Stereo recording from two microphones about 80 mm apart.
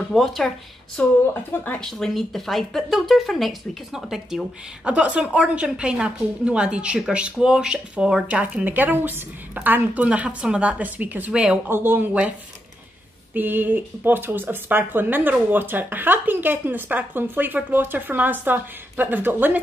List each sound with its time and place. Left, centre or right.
0.1 s speech: centre
1.0 s speech: centre
1.8 s speech: centre; by 19.6 s right